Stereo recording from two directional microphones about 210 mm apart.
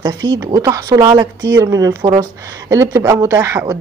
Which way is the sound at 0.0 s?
15° right (ahead or behind).